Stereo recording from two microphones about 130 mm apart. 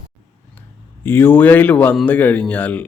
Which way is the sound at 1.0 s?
15° left (ahead or behind).